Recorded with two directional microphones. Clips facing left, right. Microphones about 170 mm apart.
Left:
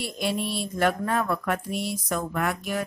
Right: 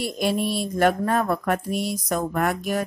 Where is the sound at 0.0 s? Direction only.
45° right (ahead or behind).